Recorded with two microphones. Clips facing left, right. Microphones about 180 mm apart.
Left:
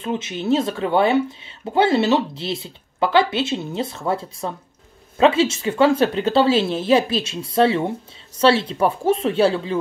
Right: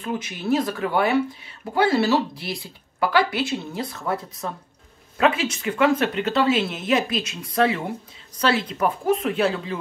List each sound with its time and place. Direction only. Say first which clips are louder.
0.0 s speech: left 3 dB; 25° left (ahead or behind)